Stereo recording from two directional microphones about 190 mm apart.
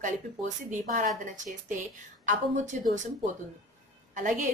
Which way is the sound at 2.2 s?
40° right (ahead or behind).